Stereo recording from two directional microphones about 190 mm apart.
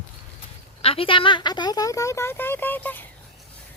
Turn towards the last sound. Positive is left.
turn(degrees=10)  # may be behind; listen again after turning